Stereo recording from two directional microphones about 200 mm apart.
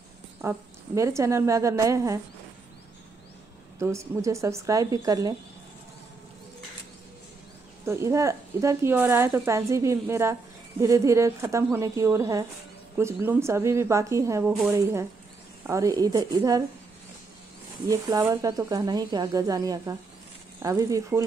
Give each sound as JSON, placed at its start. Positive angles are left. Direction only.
{"t": 0.4, "sound": "speech", "side_deg": -15}
{"t": 3.8, "sound": "speech", "side_deg": -15}
{"t": 7.8, "sound": "speech", "side_deg": -15}
{"t": 17.8, "sound": "speech", "side_deg": -15}